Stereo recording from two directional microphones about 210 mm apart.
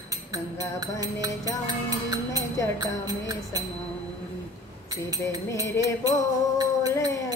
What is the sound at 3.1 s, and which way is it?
Speech, 20° right (ahead or behind).